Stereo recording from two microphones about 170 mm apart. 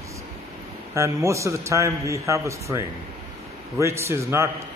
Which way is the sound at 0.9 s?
15° right (ahead or behind).